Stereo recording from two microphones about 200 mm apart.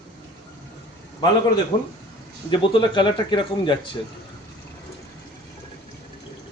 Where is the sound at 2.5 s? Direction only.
25° left (ahead or behind).